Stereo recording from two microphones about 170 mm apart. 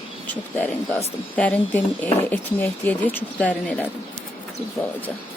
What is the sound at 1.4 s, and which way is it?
Speech, 10° left (ahead or behind).